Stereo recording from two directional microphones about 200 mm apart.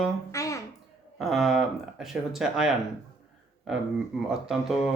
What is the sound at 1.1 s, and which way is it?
Speech, centre (ahead or behind).